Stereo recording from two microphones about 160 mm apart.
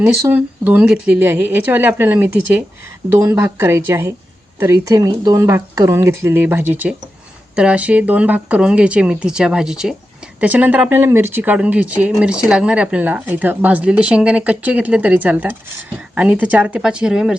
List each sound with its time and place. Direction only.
0.0 s speech: 15° right (ahead or behind)